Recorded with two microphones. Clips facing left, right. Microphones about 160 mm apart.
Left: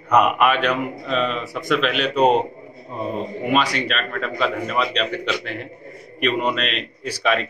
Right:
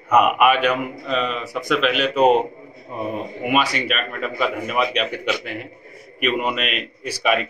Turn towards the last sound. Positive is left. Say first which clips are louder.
# right 1 dB
turn(degrees=-10)  # may be behind; listen again after turning